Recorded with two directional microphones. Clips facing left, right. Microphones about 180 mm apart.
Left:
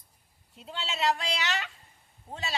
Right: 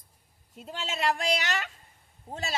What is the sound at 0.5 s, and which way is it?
A woman's voice, 45° right (ahead or behind).